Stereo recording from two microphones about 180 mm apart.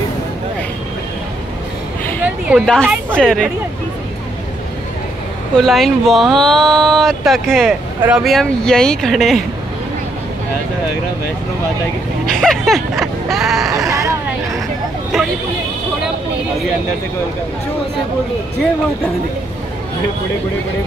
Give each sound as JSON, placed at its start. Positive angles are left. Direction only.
{"t": 2.2, "sound": "a sound", "side_deg": -5}
{"t": 2.7, "sound": "speech", "side_deg": 5}
{"t": 5.6, "sound": "speech", "side_deg": 0}
{"t": 12.3, "sound": "speech", "side_deg": 5}
{"t": 13.7, "sound": "vehicle", "side_deg": -20}
{"t": 15.1, "sound": "vehicle", "side_deg": 0}